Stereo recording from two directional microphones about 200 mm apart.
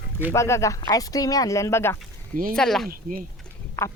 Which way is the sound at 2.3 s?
45° right (ahead or behind).